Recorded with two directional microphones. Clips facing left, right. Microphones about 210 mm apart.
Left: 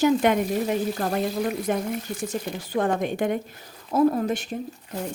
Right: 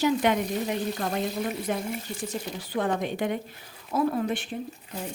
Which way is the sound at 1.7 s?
50° left (ahead or behind).